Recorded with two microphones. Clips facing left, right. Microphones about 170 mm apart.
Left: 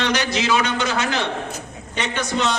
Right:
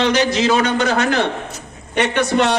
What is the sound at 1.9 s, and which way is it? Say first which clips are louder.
Speech: right 7 dB; 65° right (ahead or behind).